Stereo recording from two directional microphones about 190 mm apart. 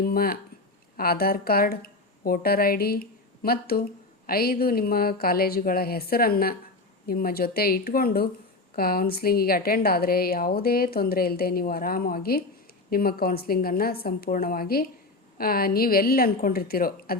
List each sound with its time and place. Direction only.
0.0 s a woman's voice: 50° left (ahead or behind)